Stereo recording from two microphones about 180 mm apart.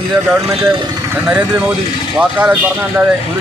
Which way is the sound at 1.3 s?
10° right (ahead or behind).